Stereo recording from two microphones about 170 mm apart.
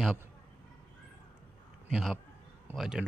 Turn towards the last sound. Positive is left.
turn(degrees=-5)  # may be behind; listen again after turning